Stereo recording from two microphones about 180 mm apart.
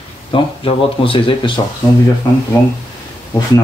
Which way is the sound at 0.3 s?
30° left (ahead or behind).